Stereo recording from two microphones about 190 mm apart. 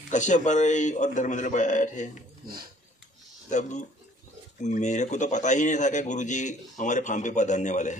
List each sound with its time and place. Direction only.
0.1 s speech: 40° left (ahead or behind)
3.4 s speech: 40° left (ahead or behind)